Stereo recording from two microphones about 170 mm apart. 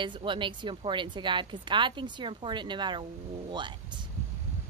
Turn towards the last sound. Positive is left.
turn(degrees=-25)  # may be behind; listen again after turning